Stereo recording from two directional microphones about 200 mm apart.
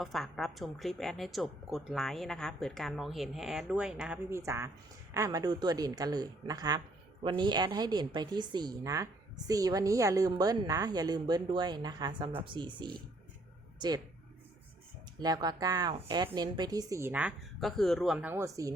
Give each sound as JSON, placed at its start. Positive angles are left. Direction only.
{"t": 0.0, "sound": "a woman's voice", "side_deg": 0}
{"t": 15.2, "sound": "speech", "side_deg": -20}